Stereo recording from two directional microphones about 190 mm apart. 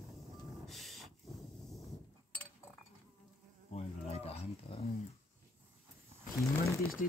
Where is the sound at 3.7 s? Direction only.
35° left (ahead or behind).